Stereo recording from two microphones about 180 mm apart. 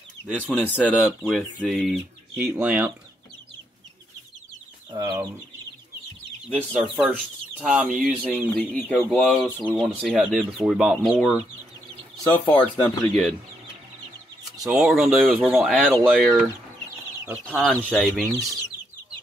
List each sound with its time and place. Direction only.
0.4 s speech: 10° left (ahead or behind); by 2.9 s 10° right (ahead or behind)
6.8 s speech: centre (ahead or behind)
12.2 s speech: 25° left (ahead or behind)
12.6 s speech: 5° left (ahead or behind)
14.7 s speech: 5° right (ahead or behind)
17.5 s speech: 5° left (ahead or behind)